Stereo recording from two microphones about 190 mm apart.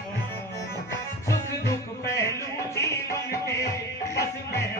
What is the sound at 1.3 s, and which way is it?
Music, 15° left (ahead or behind).